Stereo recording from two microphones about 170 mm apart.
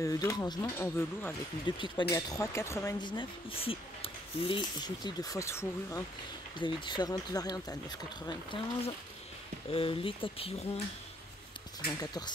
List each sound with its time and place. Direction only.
0.0 s speech: 20° left (ahead or behind)
6.6 s speech: 25° left (ahead or behind)
12.0 s speech: 25° left (ahead or behind)